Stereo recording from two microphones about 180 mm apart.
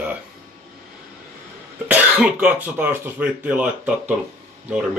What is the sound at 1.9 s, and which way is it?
Speech, 5° right (ahead or behind).